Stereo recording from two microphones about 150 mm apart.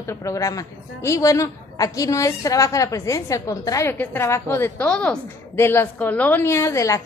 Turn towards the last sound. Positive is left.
turn(degrees=20)  # may be behind; listen again after turning